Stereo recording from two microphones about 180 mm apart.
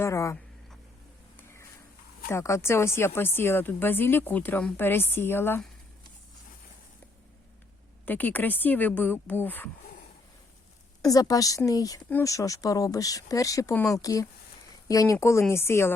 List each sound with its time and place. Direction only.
0.0 s speech: 15° left (ahead or behind)
2.3 s a woman's voice: 15° left (ahead or behind)
8.0 s a woman's voice: 10° left (ahead or behind)
11.0 s a woman's voice: 20° left (ahead or behind)